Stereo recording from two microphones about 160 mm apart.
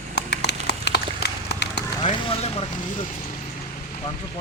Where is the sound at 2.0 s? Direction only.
35° left (ahead or behind).